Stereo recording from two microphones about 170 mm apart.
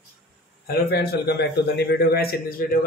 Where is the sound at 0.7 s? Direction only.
75° left (ahead or behind).